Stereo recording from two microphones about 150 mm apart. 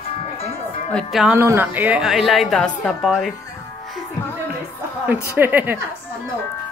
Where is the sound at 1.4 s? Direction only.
15° right (ahead or behind); by 3.1 s 5° left (ahead or behind).